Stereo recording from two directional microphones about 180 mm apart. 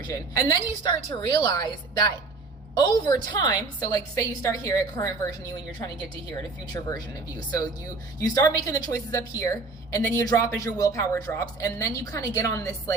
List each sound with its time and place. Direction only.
0.1 s a woman's voice: 20° left (ahead or behind)
6.8 s a woman's voice: 20° left (ahead or behind)